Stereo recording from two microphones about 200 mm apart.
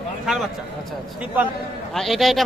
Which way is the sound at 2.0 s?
Centre (ahead or behind).